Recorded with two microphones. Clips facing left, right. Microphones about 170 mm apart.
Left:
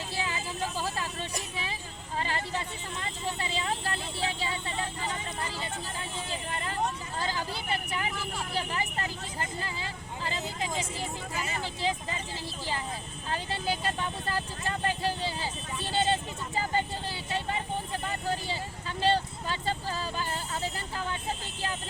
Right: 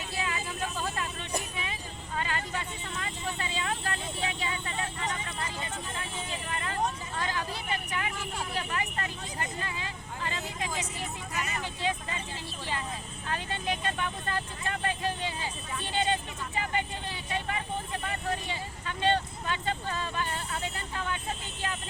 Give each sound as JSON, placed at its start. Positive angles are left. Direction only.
{"t": 0.2, "sound": "vehicle", "side_deg": 30}
{"t": 2.1, "sound": "music", "side_deg": 30}
{"t": 3.0, "sound": "vehicle", "side_deg": 30}
{"t": 6.5, "sound": "vehicle", "side_deg": 30}
{"t": 8.5, "sound": "speech", "side_deg": 30}
{"t": 13.2, "sound": "speech", "side_deg": 30}
{"t": 16.6, "sound": "vehicle", "side_deg": 35}